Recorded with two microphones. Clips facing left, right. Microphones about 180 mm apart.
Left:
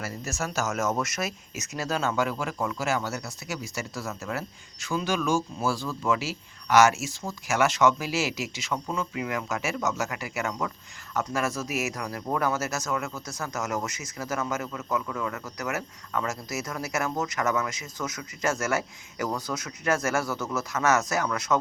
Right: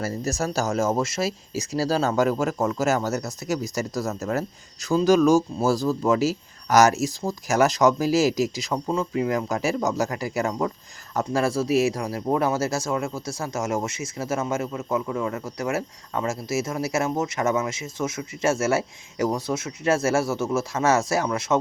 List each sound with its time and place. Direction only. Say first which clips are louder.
0.0 s speech: right 7 dB; 35° right (ahead or behind)